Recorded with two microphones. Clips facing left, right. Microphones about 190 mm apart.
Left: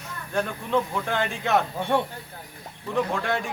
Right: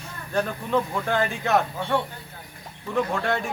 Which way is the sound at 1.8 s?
15° left (ahead or behind).